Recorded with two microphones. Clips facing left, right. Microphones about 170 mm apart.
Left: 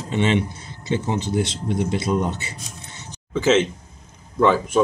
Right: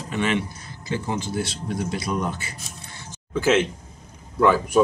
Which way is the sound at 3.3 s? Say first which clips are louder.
Left 2 dB; 10° right (ahead or behind).